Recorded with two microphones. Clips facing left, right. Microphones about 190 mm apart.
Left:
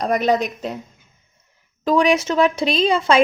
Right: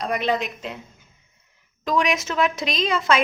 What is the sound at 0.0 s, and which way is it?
Speech, 40° left (ahead or behind).